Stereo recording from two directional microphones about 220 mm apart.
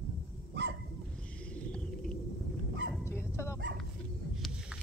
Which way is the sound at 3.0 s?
10° left (ahead or behind).